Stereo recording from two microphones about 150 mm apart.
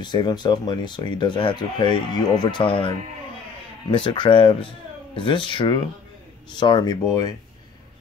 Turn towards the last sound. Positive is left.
turn(degrees=25)  # may be behind; listen again after turning